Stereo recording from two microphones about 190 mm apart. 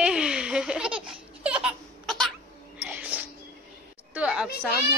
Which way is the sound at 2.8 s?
5° right (ahead or behind).